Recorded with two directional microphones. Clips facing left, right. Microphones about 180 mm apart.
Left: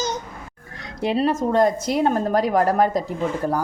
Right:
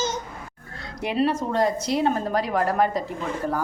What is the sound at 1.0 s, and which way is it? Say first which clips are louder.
A woman's voice: left 3 dB; 35° left (ahead or behind).